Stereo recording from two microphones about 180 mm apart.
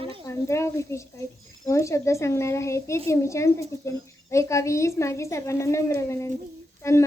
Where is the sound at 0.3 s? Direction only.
15° left (ahead or behind).